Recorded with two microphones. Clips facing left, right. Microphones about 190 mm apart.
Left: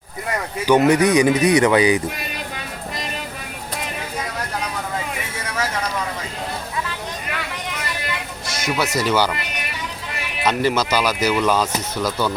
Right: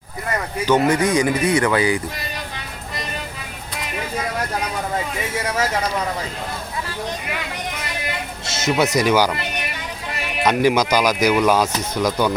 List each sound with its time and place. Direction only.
0.6 s speech: 15° left (ahead or behind)
8.4 s speech: 25° right (ahead or behind)
10.4 s speech: 10° right (ahead or behind)